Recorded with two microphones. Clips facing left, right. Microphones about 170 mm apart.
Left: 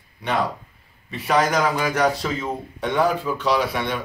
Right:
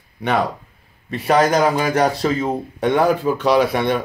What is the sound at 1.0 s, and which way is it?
Speech, 40° right (ahead or behind).